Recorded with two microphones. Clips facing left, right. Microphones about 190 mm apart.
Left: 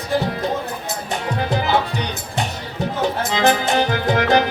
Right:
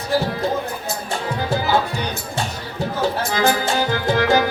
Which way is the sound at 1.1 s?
20° left (ahead or behind).